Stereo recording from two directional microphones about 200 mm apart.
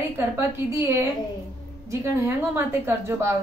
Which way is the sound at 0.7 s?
15° right (ahead or behind).